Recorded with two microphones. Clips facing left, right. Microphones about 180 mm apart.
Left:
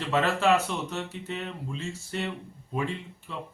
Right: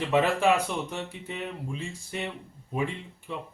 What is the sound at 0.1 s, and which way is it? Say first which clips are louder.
A man's voice: even; 15° right (ahead or behind).